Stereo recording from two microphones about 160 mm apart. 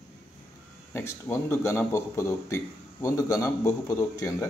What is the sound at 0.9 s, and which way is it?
A man's voice, 15° left (ahead or behind).